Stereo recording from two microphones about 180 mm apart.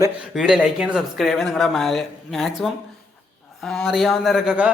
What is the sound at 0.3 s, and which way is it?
A man's voice, 5° right (ahead or behind).